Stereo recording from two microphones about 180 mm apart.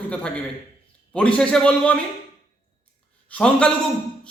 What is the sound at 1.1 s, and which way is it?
Speech, 5° left (ahead or behind).